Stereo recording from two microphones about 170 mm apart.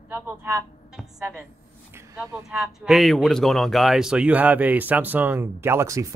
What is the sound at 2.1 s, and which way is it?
Speech, 5° right (ahead or behind).